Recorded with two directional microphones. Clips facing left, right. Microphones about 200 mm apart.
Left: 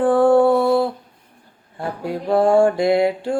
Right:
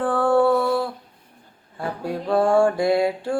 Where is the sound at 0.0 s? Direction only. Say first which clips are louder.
Left 5 dB; 15° left (ahead or behind).